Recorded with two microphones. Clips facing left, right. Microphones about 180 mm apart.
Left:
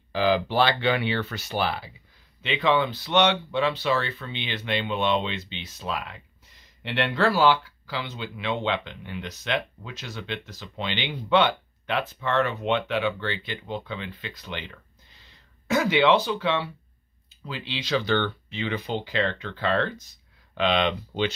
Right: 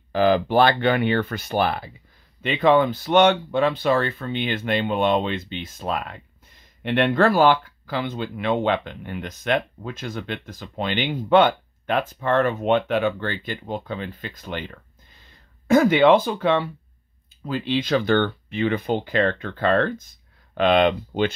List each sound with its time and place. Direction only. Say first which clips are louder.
0.1 s speech: right 5 dB; 50° right (ahead or behind)